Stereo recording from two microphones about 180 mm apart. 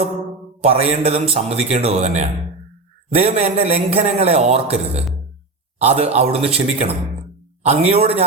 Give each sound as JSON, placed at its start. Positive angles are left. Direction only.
{"t": 0.6, "sound": "a man's voice", "side_deg": -35}